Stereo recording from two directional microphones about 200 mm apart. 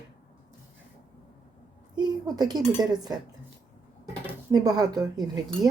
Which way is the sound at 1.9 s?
20° right (ahead or behind).